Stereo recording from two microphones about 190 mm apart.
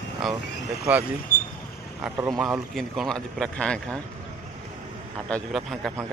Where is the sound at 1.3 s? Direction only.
45° left (ahead or behind).